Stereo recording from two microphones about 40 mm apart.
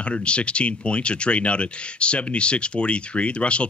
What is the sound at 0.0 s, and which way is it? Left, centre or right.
Speech, left.